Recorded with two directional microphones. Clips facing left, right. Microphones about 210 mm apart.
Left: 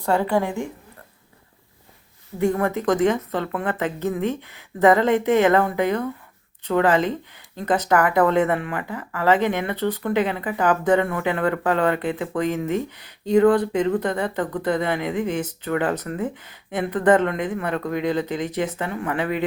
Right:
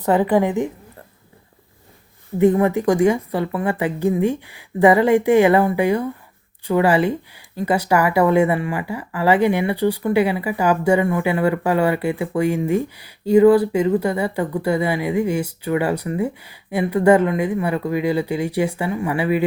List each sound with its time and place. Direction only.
0.0 s speech: 15° right (ahead or behind)
2.4 s speech: 15° right (ahead or behind)